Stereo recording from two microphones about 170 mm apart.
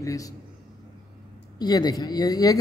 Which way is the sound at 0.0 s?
20° left (ahead or behind).